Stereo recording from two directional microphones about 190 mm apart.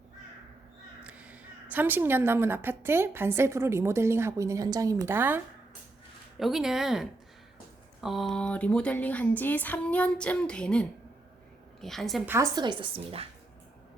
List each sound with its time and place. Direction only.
1.0 s a woman's voice: 5° right (ahead or behind)
6.4 s speech: centre (ahead or behind)
12.3 s a woman's voice: 20° right (ahead or behind)